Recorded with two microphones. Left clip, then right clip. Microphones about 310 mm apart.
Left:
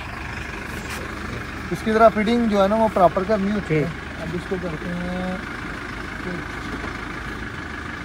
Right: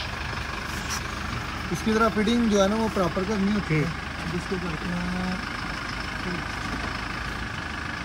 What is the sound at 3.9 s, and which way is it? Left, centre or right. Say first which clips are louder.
Vehicle: left 1 dB; right.